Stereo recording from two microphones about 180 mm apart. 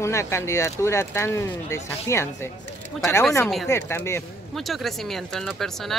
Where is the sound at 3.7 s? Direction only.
15° left (ahead or behind).